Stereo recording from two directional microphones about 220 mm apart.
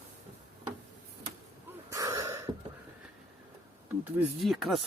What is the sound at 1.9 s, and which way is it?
Wheeze, 15° right (ahead or behind).